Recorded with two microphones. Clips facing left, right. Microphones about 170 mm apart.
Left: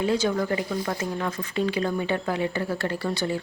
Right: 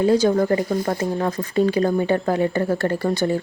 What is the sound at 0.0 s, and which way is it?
Speech, 40° right (ahead or behind).